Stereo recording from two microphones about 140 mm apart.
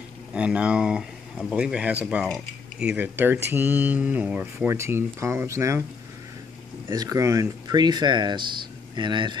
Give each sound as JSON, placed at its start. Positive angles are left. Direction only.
{"t": 0.3, "sound": "speech", "side_deg": -5}
{"t": 6.9, "sound": "speech", "side_deg": -25}